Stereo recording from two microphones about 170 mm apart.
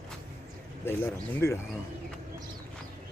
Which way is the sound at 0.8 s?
15° left (ahead or behind).